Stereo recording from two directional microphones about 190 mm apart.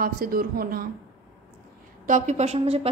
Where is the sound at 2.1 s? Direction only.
35° right (ahead or behind).